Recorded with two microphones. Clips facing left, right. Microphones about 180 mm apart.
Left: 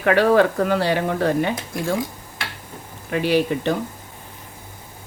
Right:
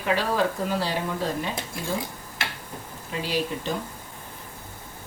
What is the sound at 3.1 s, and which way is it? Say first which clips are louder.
Speech: left 9 dB; 65° left (ahead or behind).